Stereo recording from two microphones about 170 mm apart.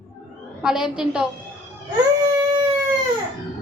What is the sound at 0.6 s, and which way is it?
Speech, 5° right (ahead or behind).